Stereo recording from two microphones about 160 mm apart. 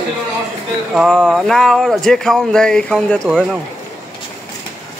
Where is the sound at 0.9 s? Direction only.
Centre (ahead or behind).